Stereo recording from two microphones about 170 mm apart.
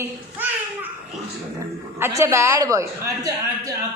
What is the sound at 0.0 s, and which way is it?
Babbling, 10° right (ahead or behind).